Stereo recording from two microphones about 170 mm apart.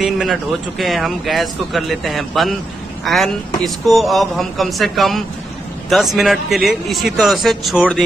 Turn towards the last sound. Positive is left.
turn(degrees=0)  # may be behind; listen again after turning